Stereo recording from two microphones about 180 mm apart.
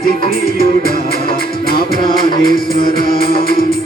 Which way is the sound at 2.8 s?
55° left (ahead or behind).